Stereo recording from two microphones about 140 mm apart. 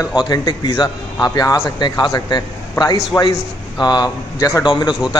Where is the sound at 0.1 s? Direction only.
30° left (ahead or behind).